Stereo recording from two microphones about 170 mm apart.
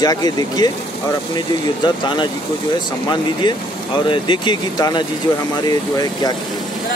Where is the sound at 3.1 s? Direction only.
25° left (ahead or behind).